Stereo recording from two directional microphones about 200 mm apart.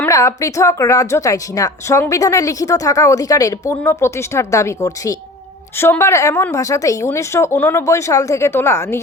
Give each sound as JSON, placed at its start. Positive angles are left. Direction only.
{"t": 0.0, "sound": "a woman's voice", "side_deg": 15}